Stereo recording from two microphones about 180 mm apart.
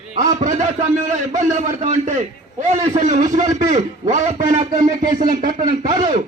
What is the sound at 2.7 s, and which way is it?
Speech, 40° right (ahead or behind).